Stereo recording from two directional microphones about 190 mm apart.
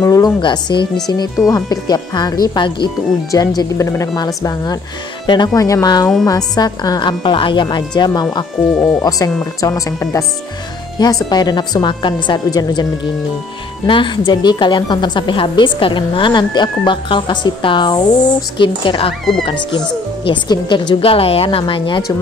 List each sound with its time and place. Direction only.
0.0 s a woman's voice: 20° left (ahead or behind)
8.6 s speech: centre (ahead or behind)
9.0 s a woman's voice: 20° left (ahead or behind)
13.8 s a woman's voice: 25° left (ahead or behind)
20.2 s a woman's voice: 25° left (ahead or behind)